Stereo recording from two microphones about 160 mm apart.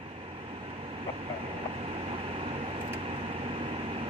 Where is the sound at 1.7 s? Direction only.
35° right (ahead or behind).